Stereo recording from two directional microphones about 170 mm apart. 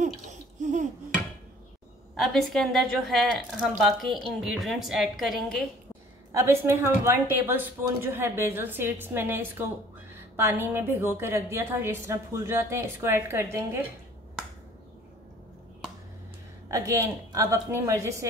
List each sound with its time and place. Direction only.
0.0 s a sound: 45° right (ahead or behind)
2.1 s a woman's voice: centre (ahead or behind)
6.3 s a woman's voice: 15° right (ahead or behind)
16.7 s a woman's voice: 20° right (ahead or behind)